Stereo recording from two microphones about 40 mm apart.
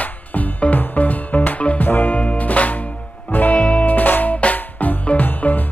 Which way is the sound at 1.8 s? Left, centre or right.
Left.